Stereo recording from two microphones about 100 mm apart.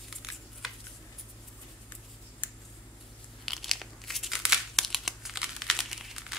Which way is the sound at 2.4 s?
15° left (ahead or behind).